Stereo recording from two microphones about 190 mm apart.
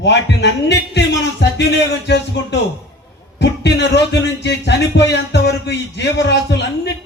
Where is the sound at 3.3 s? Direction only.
65° left (ahead or behind).